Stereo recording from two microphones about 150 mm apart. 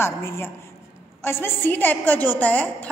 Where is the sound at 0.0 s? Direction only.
15° left (ahead or behind).